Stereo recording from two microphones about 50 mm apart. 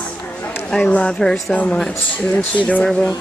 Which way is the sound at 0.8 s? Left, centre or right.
Left.